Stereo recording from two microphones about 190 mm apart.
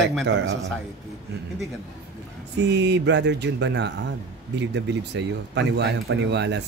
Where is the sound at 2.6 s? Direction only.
65° right (ahead or behind).